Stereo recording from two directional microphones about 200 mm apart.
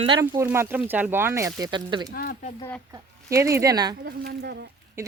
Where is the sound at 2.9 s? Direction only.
15° right (ahead or behind).